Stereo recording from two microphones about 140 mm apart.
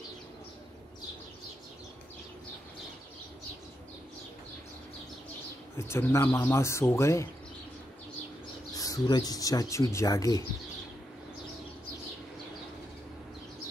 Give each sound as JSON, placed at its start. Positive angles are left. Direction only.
{"t": 5.8, "sound": "speech", "side_deg": 20}
{"t": 8.7, "sound": "speech", "side_deg": 25}